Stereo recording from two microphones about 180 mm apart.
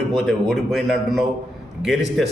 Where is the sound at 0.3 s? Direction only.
Centre (ahead or behind).